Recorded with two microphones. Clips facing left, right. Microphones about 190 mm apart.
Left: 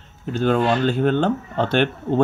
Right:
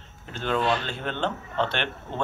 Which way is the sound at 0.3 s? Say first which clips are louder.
Left 7 dB; 45° left (ahead or behind).